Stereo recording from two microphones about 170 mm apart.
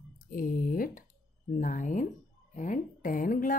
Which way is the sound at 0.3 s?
60° left (ahead or behind).